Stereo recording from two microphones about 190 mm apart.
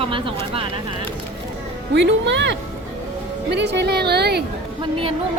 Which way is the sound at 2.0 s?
70° right (ahead or behind).